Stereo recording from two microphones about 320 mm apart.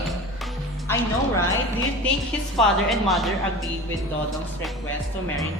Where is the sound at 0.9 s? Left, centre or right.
Centre.